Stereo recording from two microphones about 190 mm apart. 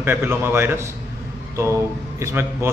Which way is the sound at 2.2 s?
15° right (ahead or behind).